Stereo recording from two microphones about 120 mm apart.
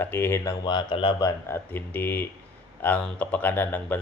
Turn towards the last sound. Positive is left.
turn(degrees=15)  # may be behind; listen again after turning